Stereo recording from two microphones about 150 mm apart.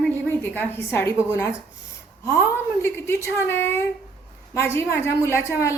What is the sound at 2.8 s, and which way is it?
A woman's voice, 15° left (ahead or behind).